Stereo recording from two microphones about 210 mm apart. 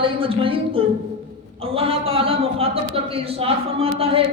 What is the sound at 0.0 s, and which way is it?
A man's voice, 25° right (ahead or behind).